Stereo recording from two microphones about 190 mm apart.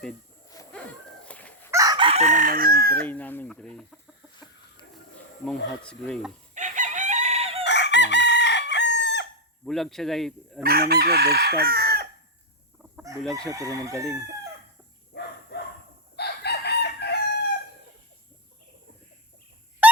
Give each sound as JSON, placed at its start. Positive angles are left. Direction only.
{"t": 0.7, "sound": "a sound", "side_deg": 5}
{"t": 1.7, "sound": "chicken", "side_deg": -20}
{"t": 3.0, "sound": "speech", "side_deg": 10}
{"t": 5.5, "sound": "speech", "side_deg": 5}
{"t": 6.5, "sound": "chicken", "side_deg": -40}
{"t": 7.6, "sound": "chicken", "side_deg": 65}
{"t": 9.6, "sound": "speech", "side_deg": 0}
{"t": 10.6, "sound": "chicken", "side_deg": -55}
{"t": 13.5, "sound": "chicken", "side_deg": -15}
{"t": 15.1, "sound": "dog", "side_deg": 60}
{"t": 16.1, "sound": "chicken", "side_deg": 60}